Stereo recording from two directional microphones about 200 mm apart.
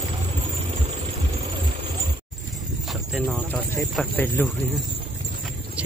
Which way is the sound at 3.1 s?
Centre (ahead or behind).